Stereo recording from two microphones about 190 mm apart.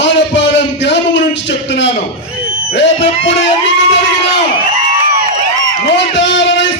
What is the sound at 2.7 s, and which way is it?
Music, 70° left (ahead or behind).